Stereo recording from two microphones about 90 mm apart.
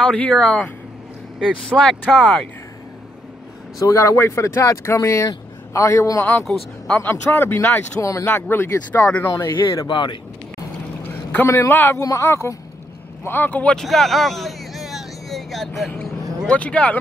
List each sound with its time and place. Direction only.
0.0 s speech: 10° left (ahead or behind)
1.7 s speech: 5° left (ahead or behind)
3.8 s speech: 35° left (ahead or behind)
6.5 s speech: 10° left (ahead or behind)
7.0 s speech: 25° left (ahead or behind)
8.0 s speech: 35° left (ahead or behind)
8.3 s speech: 25° left (ahead or behind)
9.2 s speech: 35° left (ahead or behind)
9.8 s speech: 60° left (ahead or behind)
11.4 s speech: 30° left (ahead or behind)
12.0 s speech: 35° left (ahead or behind)
13.2 s speech: 20° left (ahead or behind)
13.7 s a sound: centre (ahead or behind)
16.4 s speech: 15° left (ahead or behind)